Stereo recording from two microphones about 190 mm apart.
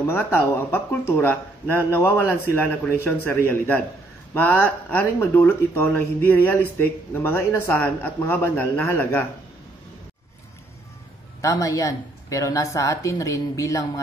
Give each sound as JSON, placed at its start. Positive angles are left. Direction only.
{"t": 0.0, "sound": "speech", "side_deg": 10}
{"t": 11.4, "sound": "speech", "side_deg": 15}